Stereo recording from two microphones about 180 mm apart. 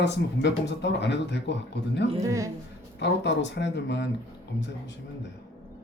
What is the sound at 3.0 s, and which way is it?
Speech, 75° left (ahead or behind).